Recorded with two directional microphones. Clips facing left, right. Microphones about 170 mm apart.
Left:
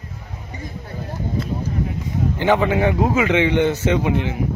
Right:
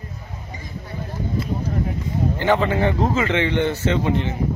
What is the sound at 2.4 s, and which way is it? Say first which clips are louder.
A man's voice: left 2 dB; 15° left (ahead or behind).